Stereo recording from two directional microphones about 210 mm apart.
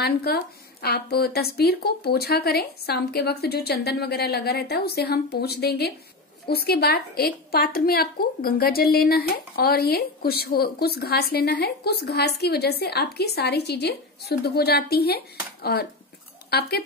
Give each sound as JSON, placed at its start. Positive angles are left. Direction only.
{"t": 0.0, "sound": "a woman's voice", "side_deg": 50}